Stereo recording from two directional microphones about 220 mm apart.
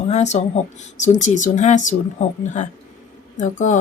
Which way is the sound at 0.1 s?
30° left (ahead or behind).